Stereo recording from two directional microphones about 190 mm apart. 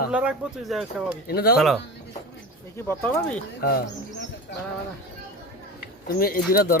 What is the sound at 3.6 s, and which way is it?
Speech, 50° left (ahead or behind).